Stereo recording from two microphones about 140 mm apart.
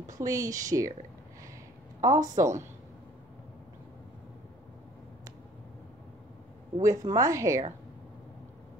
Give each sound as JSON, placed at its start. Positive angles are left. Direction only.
{"t": 0.2, "sound": "speech", "side_deg": -25}
{"t": 2.0, "sound": "a woman's voice", "side_deg": -25}
{"t": 6.8, "sound": "speech", "side_deg": -20}